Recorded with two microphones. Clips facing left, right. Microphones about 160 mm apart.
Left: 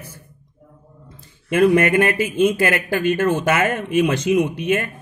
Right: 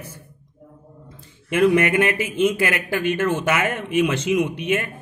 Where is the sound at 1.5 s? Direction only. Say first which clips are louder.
Left 2 dB; 40° left (ahead or behind).